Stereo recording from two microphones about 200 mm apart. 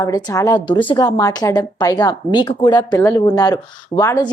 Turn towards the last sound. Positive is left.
turn(degrees=15)  # may be behind; listen again after turning